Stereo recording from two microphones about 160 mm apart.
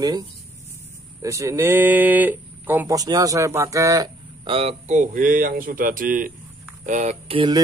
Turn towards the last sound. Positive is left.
turn(degrees=-30)  # may be behind; listen again after turning